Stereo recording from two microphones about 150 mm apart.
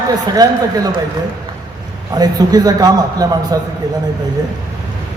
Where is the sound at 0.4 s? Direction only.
25° right (ahead or behind).